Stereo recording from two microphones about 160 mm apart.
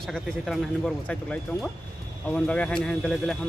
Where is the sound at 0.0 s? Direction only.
Centre (ahead or behind).